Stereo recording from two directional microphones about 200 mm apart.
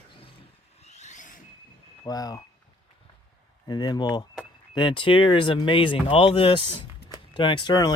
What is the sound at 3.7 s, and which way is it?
Speech, 20° left (ahead or behind).